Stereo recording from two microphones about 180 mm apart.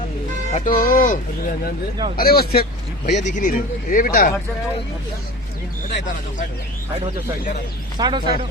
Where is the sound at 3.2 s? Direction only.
40° left (ahead or behind).